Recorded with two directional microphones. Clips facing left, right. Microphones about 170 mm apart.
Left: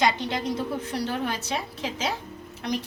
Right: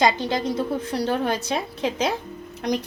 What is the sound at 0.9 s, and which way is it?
Speech, 35° right (ahead or behind).